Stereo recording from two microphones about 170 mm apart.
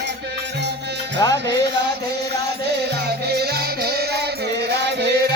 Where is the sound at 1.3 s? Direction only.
85° right.